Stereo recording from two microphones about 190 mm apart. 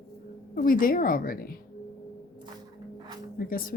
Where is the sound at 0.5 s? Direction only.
50° left (ahead or behind).